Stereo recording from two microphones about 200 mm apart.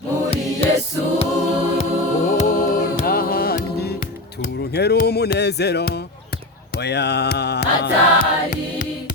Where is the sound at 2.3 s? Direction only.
40° left (ahead or behind).